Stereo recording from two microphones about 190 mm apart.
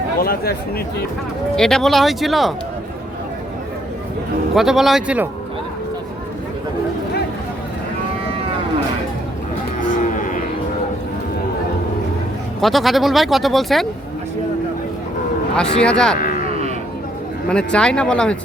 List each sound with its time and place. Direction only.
0.2 s speech: 50° left (ahead or behind)
1.5 s speech: centre (ahead or behind)
4.5 s speech: centre (ahead or behind)
10.0 s cattle: 45° left (ahead or behind)
12.6 s speech: centre (ahead or behind)
15.5 s speech: 5° left (ahead or behind)
16.1 s a sound: 45° left (ahead or behind)
17.5 s speech: 5° left (ahead or behind)